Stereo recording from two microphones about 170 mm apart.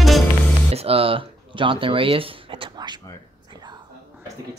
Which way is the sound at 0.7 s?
35° right (ahead or behind).